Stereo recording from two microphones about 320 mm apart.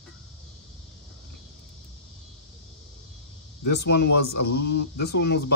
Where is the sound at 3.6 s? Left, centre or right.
Left.